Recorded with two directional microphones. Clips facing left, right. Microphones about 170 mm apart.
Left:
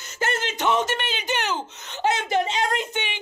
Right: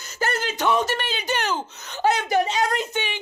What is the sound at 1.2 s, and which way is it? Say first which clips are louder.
Speech: right 2 dB; 40° right (ahead or behind).